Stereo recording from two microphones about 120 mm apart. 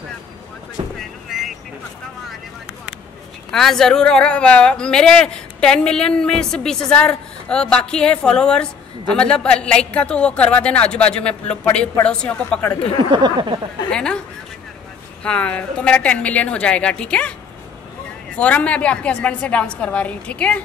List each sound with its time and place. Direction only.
0.9 s a sound: centre (ahead or behind)
3.5 s speech: 5° left (ahead or behind)
13.1 s a sound: 40° right (ahead or behind)
13.8 s speech: 5° left (ahead or behind)
15.2 s speech: 10° left (ahead or behind)
18.3 s speech: 10° left (ahead or behind)